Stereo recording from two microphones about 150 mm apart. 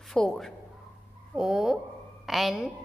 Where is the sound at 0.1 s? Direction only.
5° left (ahead or behind).